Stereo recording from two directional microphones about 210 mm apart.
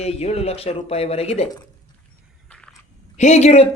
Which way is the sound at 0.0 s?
30° left (ahead or behind).